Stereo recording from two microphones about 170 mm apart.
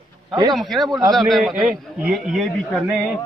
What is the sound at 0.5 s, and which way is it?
A man's voice, centre (ahead or behind).